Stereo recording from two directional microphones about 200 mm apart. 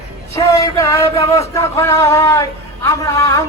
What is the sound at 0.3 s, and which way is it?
Speech, 15° left (ahead or behind).